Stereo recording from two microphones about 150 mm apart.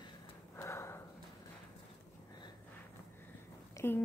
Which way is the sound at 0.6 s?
20° left (ahead or behind).